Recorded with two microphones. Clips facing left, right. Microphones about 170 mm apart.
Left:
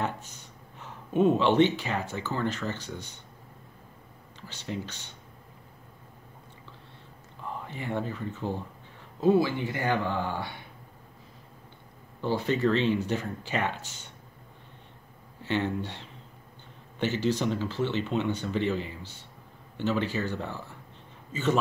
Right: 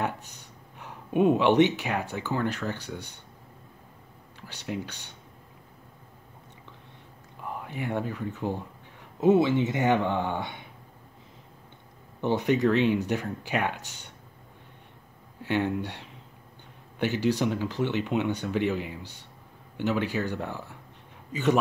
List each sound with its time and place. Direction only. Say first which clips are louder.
0.0 s speech: right 1 dB; 15° right (ahead or behind)
4.5 s speech: right 2 dB; 15° right (ahead or behind)
7.4 s speech: right 2 dB; 10° right (ahead or behind)
12.2 s speech: right 3 dB; 20° right (ahead or behind)
15.4 s a man's voice: right 2 dB; 10° right (ahead or behind)